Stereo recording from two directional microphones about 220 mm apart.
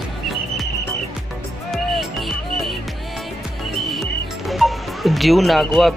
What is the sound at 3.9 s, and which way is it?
Speech, centre (ahead or behind).